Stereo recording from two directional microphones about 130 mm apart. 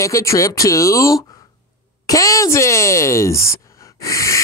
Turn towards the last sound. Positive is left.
turn(degrees=25)  # may be behind; listen again after turning